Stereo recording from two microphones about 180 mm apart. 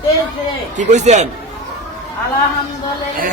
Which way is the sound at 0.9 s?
40° right (ahead or behind).